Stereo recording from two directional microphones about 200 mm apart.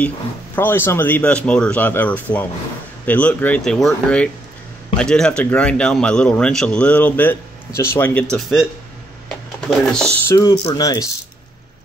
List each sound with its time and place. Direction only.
0.6 s speech: 10° left (ahead or behind)